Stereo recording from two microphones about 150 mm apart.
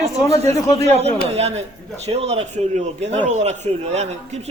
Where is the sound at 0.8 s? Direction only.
45° right (ahead or behind).